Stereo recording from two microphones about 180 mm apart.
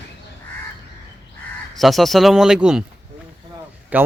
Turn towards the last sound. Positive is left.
turn(degrees=-10)  # may be behind; listen again after turning